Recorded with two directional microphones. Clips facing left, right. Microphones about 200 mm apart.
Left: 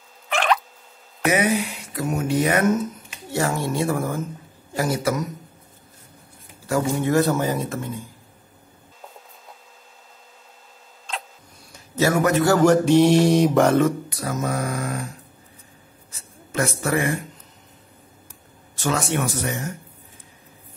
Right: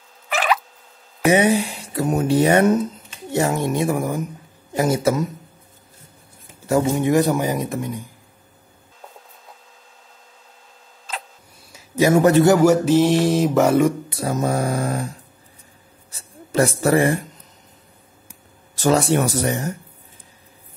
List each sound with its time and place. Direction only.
0.3 s a sound: 5° right (ahead or behind)
1.3 s speech: 30° right (ahead or behind)
3.3 s a man's voice: 20° right (ahead or behind)
6.6 s speech: 25° right (ahead or behind)
11.1 s a sound: 5° right (ahead or behind)
12.1 s a man's voice: 30° right (ahead or behind)
12.5 s speech: 10° right (ahead or behind)
14.0 s speech: 25° right (ahead or behind)
16.2 s a sound: 35° right (ahead or behind)
18.8 s speech: 35° right (ahead or behind)